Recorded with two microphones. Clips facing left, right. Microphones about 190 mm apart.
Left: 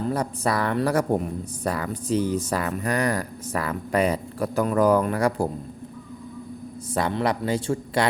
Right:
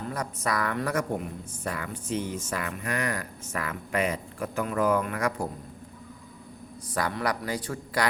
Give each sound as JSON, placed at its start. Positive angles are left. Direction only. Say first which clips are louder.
{"t": 0.1, "sound": "speech", "louder": "left 3 dB", "side_deg": 30}
{"t": 6.9, "sound": "speech", "louder": "left 5 dB", "side_deg": 25}